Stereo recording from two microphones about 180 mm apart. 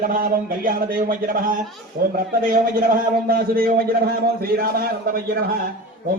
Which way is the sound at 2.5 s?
55° right (ahead or behind).